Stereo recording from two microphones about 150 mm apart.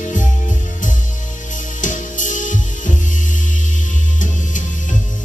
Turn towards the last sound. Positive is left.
turn(degrees=60)  # may be behind; listen again after turning